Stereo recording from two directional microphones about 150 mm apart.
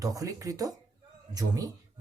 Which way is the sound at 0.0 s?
25° right (ahead or behind).